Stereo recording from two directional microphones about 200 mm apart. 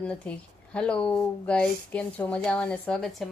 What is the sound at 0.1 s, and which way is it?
Speech, 5° left (ahead or behind).